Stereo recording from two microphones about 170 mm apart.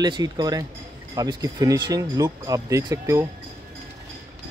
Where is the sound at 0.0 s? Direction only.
25° right (ahead or behind).